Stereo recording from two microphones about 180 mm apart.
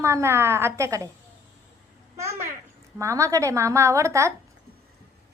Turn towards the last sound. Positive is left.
turn(degrees=-15)  # may be behind; listen again after turning